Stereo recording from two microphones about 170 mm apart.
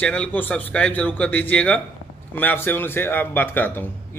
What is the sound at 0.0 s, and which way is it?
A man's voice, 5° left (ahead or behind).